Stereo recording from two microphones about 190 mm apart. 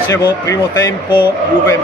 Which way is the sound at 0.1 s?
15° left (ahead or behind).